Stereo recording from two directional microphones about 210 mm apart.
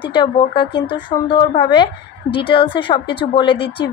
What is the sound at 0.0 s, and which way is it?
Speech, 25° left (ahead or behind).